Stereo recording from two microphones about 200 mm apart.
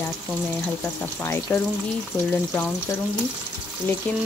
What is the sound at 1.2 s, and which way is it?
Frying, 10° left (ahead or behind).